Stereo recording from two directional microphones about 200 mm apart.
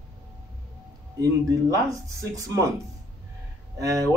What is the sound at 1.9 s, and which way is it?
Speech, 15° right (ahead or behind).